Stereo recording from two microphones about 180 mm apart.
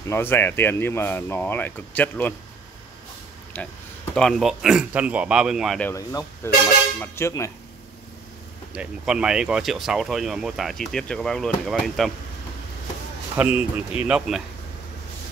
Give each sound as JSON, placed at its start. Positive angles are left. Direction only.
{"t": 0.0, "sound": "speech", "side_deg": 15}
{"t": 3.5, "sound": "speech", "side_deg": 10}
{"t": 5.9, "sound": "speech", "side_deg": 15}
{"t": 8.7, "sound": "speech", "side_deg": -5}
{"t": 13.4, "sound": "speech", "side_deg": -5}